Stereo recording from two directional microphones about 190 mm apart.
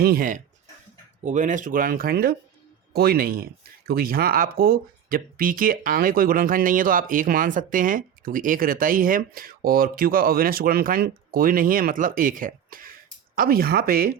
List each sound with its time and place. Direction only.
0.0 s speech: 50° right (ahead or behind)